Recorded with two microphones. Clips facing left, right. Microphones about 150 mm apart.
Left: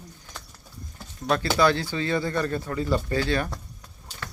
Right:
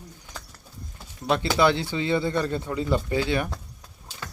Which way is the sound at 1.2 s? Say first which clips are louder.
Even; 20° right (ahead or behind).